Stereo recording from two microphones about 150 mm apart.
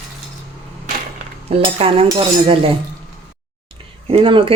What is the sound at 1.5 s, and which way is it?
Speech, 40° right (ahead or behind).